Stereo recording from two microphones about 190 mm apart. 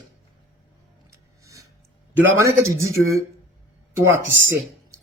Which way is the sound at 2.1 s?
15° right (ahead or behind).